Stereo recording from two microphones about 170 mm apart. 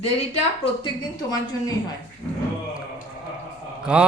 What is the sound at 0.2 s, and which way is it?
Speech, 40° left (ahead or behind).